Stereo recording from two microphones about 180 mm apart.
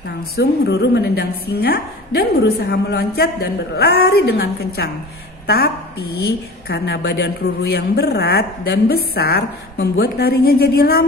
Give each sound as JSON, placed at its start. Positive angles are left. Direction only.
{"t": 0.4, "sound": "a woman's voice", "side_deg": 70}
{"t": 6.7, "sound": "a woman's voice", "side_deg": 65}